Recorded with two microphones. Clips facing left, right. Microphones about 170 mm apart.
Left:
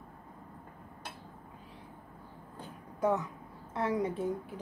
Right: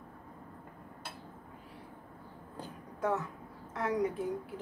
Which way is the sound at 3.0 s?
15° left (ahead or behind).